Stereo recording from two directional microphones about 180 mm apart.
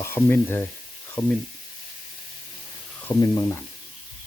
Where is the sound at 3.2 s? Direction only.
20° left (ahead or behind).